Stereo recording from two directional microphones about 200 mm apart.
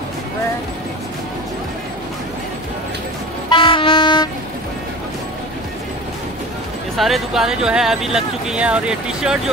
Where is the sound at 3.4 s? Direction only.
25° left (ahead or behind).